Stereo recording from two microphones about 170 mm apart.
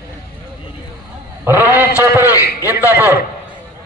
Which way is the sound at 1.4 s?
10° right (ahead or behind).